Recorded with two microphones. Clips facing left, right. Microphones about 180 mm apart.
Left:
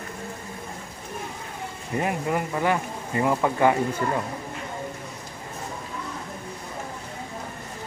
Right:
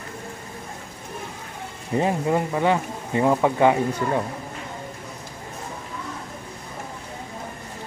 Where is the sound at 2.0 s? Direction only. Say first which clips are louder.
Right 4 dB; 25° right (ahead or behind).